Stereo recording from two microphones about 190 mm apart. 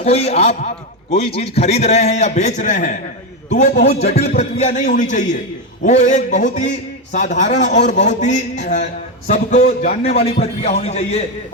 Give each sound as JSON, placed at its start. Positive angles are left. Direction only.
{"t": 0.0, "sound": "a man's voice", "side_deg": 35}